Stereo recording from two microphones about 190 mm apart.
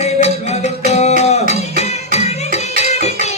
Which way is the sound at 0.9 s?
35° left (ahead or behind).